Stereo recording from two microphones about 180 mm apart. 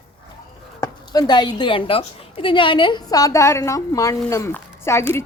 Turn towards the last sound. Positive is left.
turn(degrees=15)  # may be behind; listen again after turning